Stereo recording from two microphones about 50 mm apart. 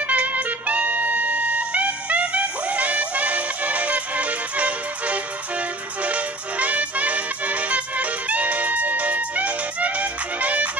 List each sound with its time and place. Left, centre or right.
0.0 s music: right